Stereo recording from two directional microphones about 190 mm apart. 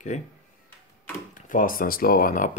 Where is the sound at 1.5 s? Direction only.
50° left (ahead or behind).